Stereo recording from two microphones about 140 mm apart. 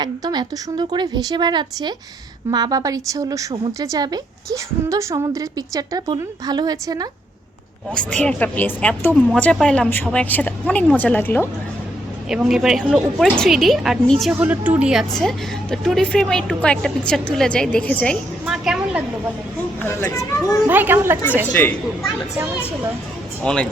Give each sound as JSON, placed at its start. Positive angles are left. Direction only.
{"t": 0.0, "sound": "a woman's voice", "side_deg": -30}
{"t": 8.1, "sound": "a woman's voice", "side_deg": 10}
{"t": 12.3, "sound": "a woman's voice", "side_deg": -5}
{"t": 14.3, "sound": "a woman's voice", "side_deg": -10}
{"t": 18.4, "sound": "a sound", "side_deg": -5}
{"t": 19.8, "sound": "speech", "side_deg": 15}
{"t": 20.7, "sound": "speech", "side_deg": -15}
{"t": 21.4, "sound": "a woman's voice", "side_deg": 10}
{"t": 23.4, "sound": "a woman's voice", "side_deg": 5}